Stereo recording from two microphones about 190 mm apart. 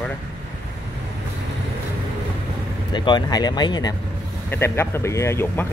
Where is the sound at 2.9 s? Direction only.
25° left (ahead or behind).